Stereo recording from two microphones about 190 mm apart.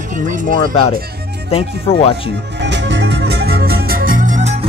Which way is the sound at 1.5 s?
30° left (ahead or behind).